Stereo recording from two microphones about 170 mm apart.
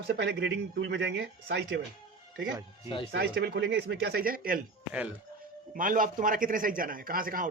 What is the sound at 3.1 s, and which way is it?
Speech, 70° right (ahead or behind).